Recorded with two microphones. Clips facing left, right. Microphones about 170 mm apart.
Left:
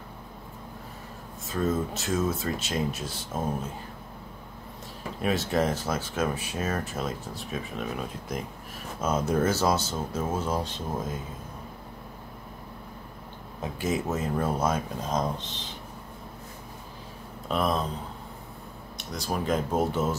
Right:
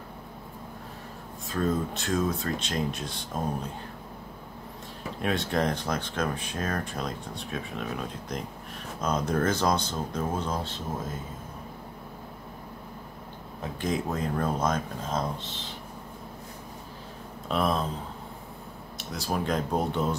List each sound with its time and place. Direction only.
1.5 s speech: centre (ahead or behind)
5.2 s speech: 5° left (ahead or behind)
13.6 s speech: 5° left (ahead or behind)
17.5 s speech: centre (ahead or behind)
18.9 s speech: centre (ahead or behind)